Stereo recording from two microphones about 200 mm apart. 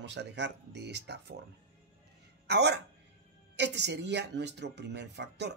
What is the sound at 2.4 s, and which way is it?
Speech, 55° right (ahead or behind).